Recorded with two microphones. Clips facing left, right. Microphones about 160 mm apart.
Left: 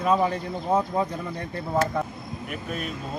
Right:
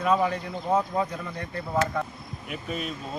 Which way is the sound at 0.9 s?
25° left (ahead or behind).